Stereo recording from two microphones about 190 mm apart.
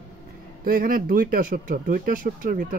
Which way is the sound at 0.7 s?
45° right (ahead or behind).